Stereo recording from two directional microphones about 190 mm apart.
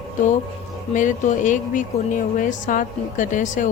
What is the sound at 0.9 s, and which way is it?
Speech, 40° left (ahead or behind).